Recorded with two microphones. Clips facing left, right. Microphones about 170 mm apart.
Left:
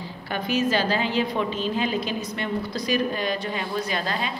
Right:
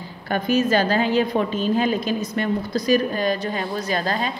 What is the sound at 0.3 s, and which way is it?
A woman's voice, 45° right (ahead or behind).